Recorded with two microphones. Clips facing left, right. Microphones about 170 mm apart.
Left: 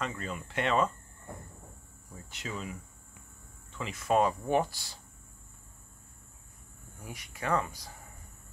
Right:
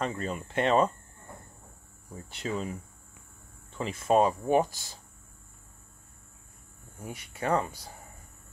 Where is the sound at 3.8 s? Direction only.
25° right (ahead or behind).